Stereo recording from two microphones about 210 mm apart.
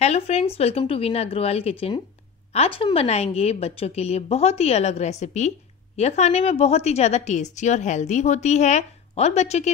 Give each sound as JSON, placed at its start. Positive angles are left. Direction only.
{"t": 0.0, "sound": "a woman's voice", "side_deg": 30}